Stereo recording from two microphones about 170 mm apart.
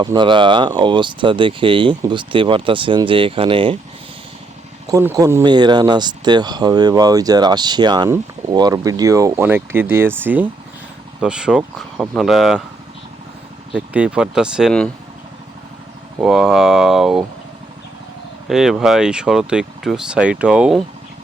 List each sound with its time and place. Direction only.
0.0 s speech: 25° right (ahead or behind)
4.9 s speech: 20° right (ahead or behind); by 12.6 s centre (ahead or behind)
13.7 s speech: 10° right (ahead or behind)
16.2 s speech: centre (ahead or behind)
18.4 s speech: centre (ahead or behind)